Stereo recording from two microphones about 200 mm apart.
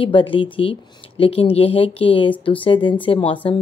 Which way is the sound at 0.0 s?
25° left (ahead or behind).